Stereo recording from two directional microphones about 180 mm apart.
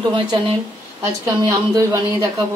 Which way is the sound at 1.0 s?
15° right (ahead or behind).